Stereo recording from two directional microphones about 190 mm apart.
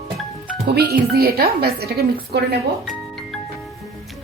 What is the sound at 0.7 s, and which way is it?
Speech, 55° right (ahead or behind).